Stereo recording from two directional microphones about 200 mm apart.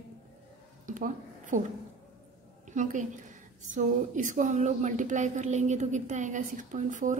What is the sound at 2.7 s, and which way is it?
A woman's voice, 40° right (ahead or behind).